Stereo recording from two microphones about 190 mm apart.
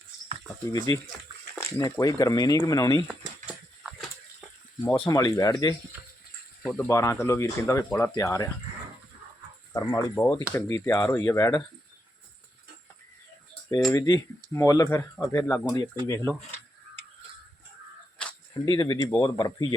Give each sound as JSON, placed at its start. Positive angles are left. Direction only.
{"t": 0.7, "sound": "speech", "side_deg": 20}
{"t": 3.1, "sound": "a sound", "side_deg": -5}
{"t": 4.8, "sound": "speech", "side_deg": 20}
{"t": 6.6, "sound": "speech", "side_deg": 5}
{"t": 9.7, "sound": "speech", "side_deg": 20}
{"t": 13.9, "sound": "speech", "side_deg": 20}
{"t": 18.6, "sound": "speech", "side_deg": 20}